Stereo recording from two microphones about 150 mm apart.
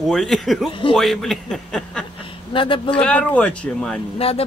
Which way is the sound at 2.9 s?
10° left (ahead or behind).